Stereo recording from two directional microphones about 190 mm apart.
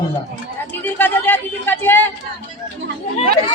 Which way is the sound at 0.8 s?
10° left (ahead or behind).